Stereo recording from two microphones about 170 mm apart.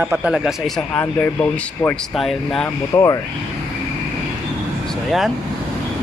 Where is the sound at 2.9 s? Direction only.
20° left (ahead or behind).